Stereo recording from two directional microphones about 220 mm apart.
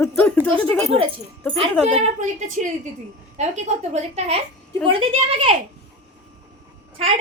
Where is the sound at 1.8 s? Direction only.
35° right (ahead or behind).